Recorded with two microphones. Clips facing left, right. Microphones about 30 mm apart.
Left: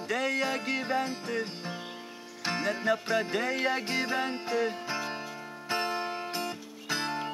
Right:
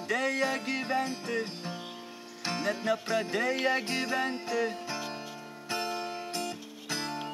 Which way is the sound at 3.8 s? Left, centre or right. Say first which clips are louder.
Left 1 dB; centre.